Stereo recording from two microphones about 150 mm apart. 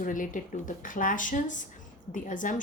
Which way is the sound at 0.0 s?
60° left (ahead or behind).